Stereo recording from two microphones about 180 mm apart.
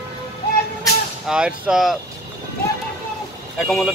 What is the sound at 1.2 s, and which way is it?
Speech, 5° right (ahead or behind).